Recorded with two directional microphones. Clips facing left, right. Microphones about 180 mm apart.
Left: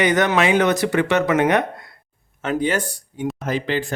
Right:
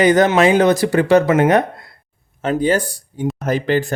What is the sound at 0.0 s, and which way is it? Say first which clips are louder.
Speech: right 5 dB; 30° right (ahead or behind).